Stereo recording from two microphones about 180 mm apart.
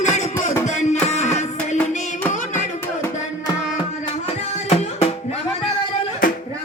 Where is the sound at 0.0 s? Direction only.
40° left (ahead or behind).